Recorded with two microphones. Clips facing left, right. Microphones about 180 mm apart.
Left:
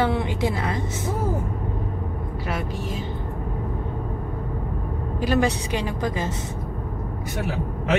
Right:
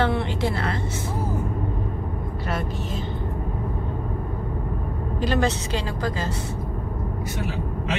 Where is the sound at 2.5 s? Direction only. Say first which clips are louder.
Even; 10° left (ahead or behind).